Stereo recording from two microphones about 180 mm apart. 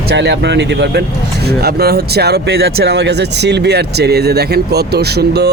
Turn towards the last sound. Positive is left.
turn(degrees=-65)  # may be behind; listen again after turning